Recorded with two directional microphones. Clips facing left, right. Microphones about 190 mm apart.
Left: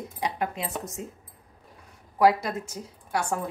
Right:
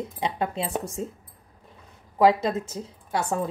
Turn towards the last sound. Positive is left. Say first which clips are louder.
# right 2 dB
turn(degrees=-25)  # may be behind; listen again after turning